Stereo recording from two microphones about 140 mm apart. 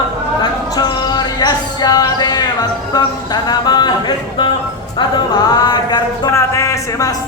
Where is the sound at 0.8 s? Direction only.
30° left (ahead or behind).